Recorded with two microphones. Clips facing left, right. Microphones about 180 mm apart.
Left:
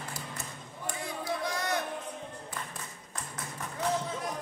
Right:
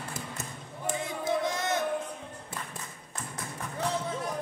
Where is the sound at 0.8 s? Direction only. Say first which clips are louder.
Right 5 dB; 20° right (ahead or behind).